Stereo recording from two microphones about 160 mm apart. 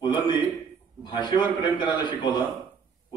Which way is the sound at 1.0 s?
30° left (ahead or behind).